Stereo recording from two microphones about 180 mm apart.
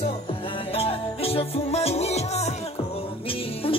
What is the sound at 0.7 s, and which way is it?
Music, 35° left (ahead or behind).